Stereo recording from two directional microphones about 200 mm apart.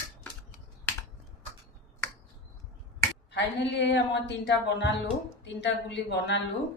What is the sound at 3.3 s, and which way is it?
Speech, 60° left (ahead or behind).